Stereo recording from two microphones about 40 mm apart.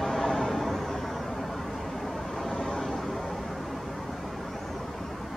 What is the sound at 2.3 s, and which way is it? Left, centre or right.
Vehicle, centre.